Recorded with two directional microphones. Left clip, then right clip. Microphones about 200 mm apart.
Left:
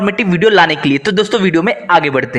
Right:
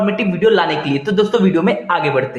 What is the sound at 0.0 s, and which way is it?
A man's voice, 40° left (ahead or behind).